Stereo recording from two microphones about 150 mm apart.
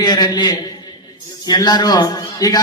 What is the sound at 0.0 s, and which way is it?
A man's voice, 25° left (ahead or behind).